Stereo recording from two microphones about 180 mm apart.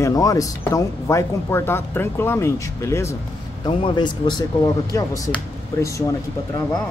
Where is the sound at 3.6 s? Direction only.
25° left (ahead or behind).